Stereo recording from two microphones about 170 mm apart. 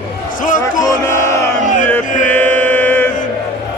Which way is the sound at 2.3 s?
10° left (ahead or behind).